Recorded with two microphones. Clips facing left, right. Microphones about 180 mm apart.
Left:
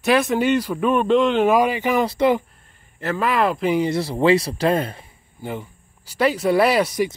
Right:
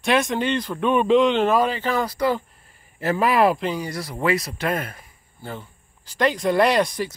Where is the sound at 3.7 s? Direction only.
25° left (ahead or behind).